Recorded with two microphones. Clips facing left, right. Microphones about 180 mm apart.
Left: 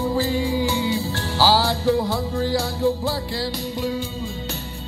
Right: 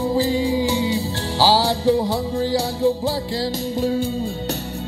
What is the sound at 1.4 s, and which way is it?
Music, 30° right (ahead or behind).